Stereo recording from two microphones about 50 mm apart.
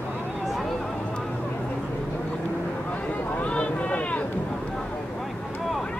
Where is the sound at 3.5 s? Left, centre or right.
Left.